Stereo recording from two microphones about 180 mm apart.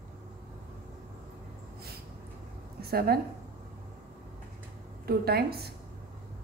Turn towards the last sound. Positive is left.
turn(degrees=-60)  # may be behind; listen again after turning